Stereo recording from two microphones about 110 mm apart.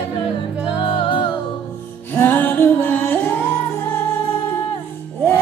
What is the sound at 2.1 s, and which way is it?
Music, 20° left (ahead or behind).